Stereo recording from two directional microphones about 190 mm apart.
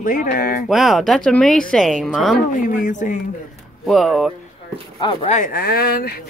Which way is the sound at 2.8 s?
40° left (ahead or behind).